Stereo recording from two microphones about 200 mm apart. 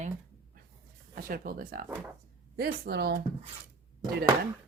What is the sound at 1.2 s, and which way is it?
Speech, 45° right (ahead or behind).